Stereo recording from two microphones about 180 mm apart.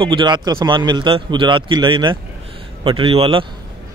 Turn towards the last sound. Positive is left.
turn(degrees=-30)  # may be behind; listen again after turning